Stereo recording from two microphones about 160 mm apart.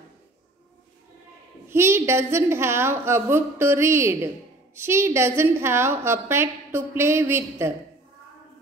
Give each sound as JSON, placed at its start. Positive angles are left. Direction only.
{"t": 1.7, "sound": "a woman's voice", "side_deg": -15}